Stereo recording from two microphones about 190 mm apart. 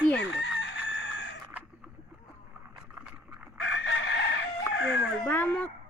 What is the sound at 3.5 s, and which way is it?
Chicken, 80° left.